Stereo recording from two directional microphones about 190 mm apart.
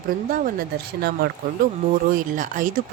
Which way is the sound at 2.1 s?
45° right (ahead or behind).